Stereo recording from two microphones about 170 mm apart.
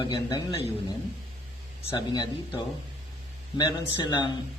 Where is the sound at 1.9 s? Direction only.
25° left (ahead or behind).